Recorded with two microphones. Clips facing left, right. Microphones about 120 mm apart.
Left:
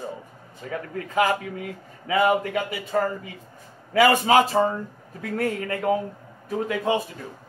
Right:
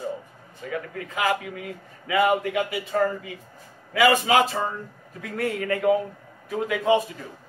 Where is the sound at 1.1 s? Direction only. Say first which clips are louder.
Left 3 dB; 35° left (ahead or behind).